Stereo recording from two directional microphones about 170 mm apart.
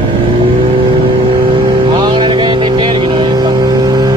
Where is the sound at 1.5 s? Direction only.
25° right (ahead or behind).